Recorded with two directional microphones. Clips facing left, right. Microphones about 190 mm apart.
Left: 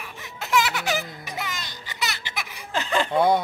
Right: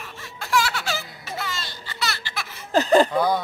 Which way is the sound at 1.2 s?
15° left (ahead or behind).